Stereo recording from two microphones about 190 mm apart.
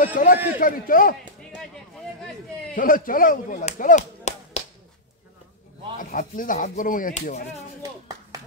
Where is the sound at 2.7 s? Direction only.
45° left (ahead or behind).